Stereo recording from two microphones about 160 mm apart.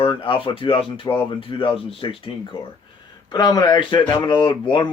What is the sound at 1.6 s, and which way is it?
Speech, 35° left (ahead or behind).